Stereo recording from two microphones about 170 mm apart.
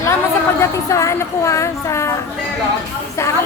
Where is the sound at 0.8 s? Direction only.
15° left (ahead or behind).